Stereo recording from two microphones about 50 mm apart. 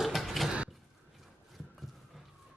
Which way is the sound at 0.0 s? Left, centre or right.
Centre.